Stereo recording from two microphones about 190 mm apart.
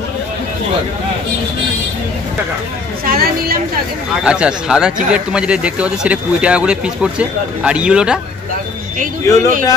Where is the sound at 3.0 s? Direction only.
50° right (ahead or behind).